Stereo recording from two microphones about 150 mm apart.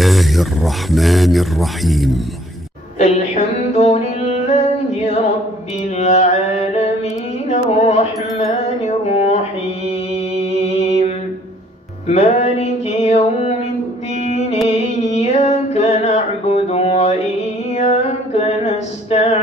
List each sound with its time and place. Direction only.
0.0 s speech: centre (ahead or behind)
3.0 s music: 45° left (ahead or behind)
5.9 s mantra: 50° left (ahead or behind)
7.4 s music: 50° left (ahead or behind)
10.4 s music: 45° left (ahead or behind)
12.1 s music: 45° left (ahead or behind)